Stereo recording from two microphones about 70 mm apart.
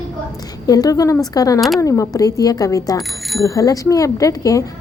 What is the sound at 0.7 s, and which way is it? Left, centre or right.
Speech, left.